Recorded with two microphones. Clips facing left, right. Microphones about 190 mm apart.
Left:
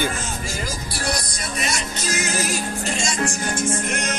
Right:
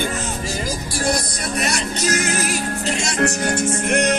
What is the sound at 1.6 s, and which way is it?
Music, 60° right (ahead or behind).